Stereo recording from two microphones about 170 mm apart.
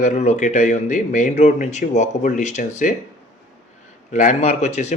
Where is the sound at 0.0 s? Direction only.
45° left (ahead or behind).